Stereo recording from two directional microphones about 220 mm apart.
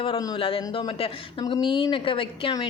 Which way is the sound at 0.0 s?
20° left (ahead or behind).